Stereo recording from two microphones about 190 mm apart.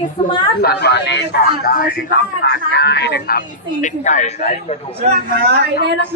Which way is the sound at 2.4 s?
65° left (ahead or behind).